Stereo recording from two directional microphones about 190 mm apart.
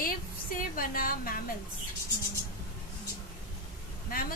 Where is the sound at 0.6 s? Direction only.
50° left (ahead or behind).